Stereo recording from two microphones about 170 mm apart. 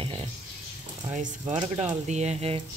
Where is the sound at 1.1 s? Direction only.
45° right (ahead or behind).